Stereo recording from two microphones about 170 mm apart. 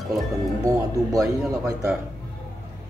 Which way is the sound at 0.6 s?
20° right (ahead or behind).